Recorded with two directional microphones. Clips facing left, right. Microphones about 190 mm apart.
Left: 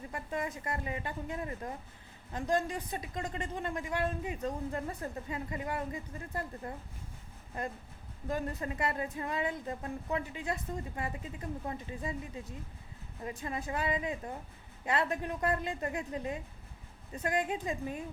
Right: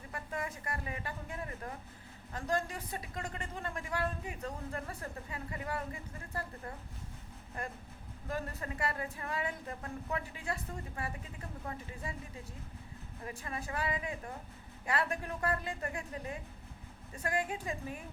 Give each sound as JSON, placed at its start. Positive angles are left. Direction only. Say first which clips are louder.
{"t": 0.1, "sound": "a woman's voice", "louder": "left 3 dB", "side_deg": 20}